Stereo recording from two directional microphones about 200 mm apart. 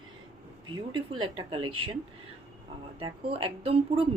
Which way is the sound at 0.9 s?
25° right (ahead or behind).